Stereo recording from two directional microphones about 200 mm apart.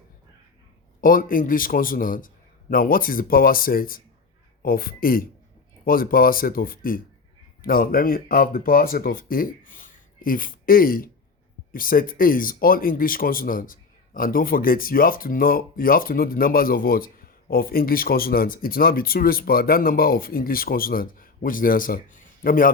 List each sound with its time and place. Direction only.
1.0 s speech: 45° left (ahead or behind)